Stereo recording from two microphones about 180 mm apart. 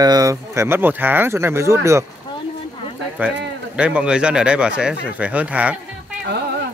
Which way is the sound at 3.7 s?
5° right (ahead or behind).